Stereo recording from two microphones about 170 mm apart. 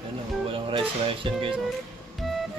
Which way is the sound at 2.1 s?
Centre (ahead or behind).